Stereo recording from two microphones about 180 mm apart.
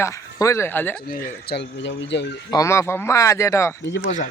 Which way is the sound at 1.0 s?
55° left (ahead or behind).